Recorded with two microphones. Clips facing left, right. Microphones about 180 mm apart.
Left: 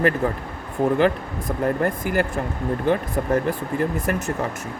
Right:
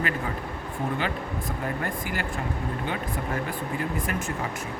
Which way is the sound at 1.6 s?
45° left (ahead or behind).